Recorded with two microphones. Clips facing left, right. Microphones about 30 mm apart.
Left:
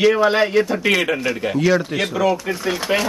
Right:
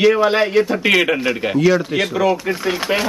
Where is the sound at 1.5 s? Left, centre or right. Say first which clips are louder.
Right 3 dB; centre.